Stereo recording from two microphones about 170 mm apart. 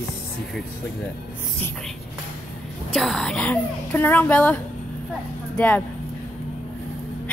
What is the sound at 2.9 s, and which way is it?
A child's voice, centre (ahead or behind).